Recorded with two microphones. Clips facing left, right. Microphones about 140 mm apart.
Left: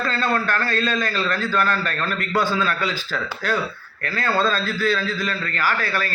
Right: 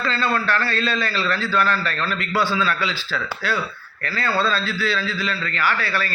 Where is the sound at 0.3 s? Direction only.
45° left (ahead or behind).